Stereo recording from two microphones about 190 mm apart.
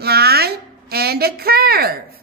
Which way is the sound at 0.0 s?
55° right (ahead or behind).